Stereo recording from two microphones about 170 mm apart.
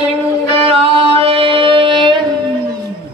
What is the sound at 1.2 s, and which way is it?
Music, 35° right (ahead or behind).